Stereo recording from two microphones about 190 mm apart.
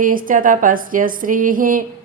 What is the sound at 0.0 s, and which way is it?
A woman's voice, 45° right (ahead or behind).